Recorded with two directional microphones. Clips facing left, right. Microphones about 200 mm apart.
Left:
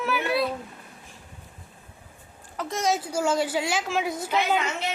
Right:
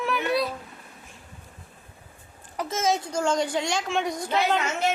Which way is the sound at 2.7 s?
Centre (ahead or behind).